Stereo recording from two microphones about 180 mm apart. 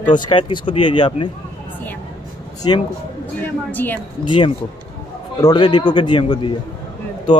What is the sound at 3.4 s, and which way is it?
Speech, 10° left (ahead or behind).